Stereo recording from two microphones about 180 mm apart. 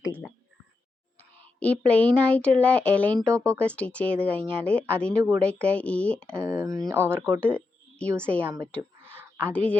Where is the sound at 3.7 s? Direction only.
5° left (ahead or behind).